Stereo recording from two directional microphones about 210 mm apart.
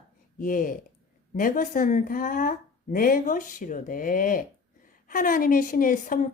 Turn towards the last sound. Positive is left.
turn(degrees=40)  # may be behind; listen again after turning